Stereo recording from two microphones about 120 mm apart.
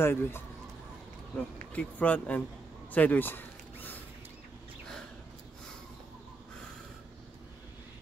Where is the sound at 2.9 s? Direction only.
15° left (ahead or behind).